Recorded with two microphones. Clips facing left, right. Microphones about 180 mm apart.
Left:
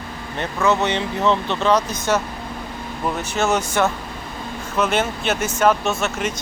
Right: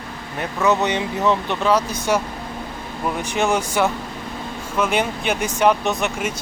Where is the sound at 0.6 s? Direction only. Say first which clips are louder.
Even; 15° right (ahead or behind).